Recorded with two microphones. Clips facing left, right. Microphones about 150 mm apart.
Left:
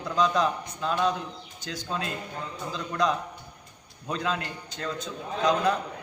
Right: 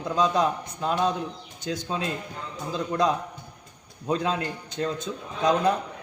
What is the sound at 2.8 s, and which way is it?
A man's voice, 25° right (ahead or behind).